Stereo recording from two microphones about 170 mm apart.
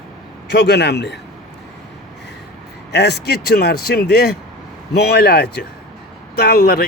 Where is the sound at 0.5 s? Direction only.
90° left.